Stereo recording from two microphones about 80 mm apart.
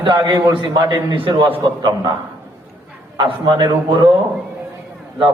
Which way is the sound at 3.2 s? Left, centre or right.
Right.